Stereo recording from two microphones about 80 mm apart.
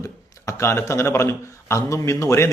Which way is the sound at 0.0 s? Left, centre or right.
Left.